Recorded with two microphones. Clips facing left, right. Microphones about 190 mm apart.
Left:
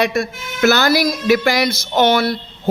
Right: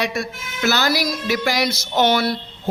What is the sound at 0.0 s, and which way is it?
Speech, 50° left (ahead or behind).